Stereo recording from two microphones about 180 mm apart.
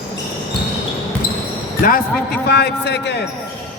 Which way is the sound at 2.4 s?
65° left (ahead or behind).